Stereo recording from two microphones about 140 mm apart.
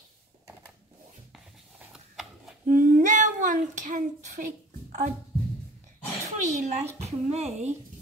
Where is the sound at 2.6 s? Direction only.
75° right (ahead or behind).